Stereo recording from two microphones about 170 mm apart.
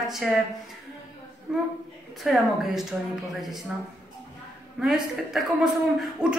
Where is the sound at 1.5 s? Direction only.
5° right (ahead or behind).